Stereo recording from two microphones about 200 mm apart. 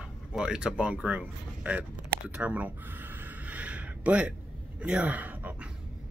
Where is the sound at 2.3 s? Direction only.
5° right (ahead or behind).